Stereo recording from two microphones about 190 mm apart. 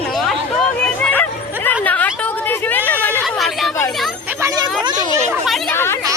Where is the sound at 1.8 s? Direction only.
10° left (ahead or behind).